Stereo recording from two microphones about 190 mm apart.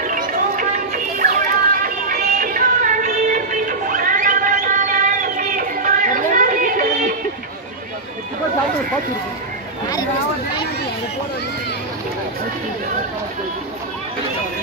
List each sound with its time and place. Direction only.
0.0 s music: 45° right (ahead or behind)